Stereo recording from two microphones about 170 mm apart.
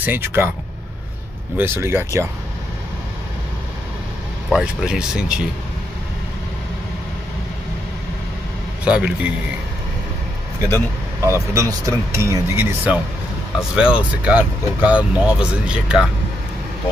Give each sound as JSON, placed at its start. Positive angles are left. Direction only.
{"t": 0.0, "sound": "speech", "side_deg": -10}
{"t": 1.6, "sound": "speech", "side_deg": -15}
{"t": 4.5, "sound": "speech", "side_deg": -5}
{"t": 8.8, "sound": "speech", "side_deg": -5}
{"t": 10.7, "sound": "speech", "side_deg": -15}